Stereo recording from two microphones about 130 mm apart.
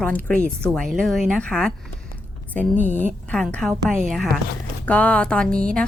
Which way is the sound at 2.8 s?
70° left (ahead or behind).